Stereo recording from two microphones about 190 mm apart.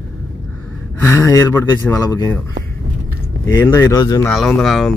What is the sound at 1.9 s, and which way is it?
Speech, 15° left (ahead or behind).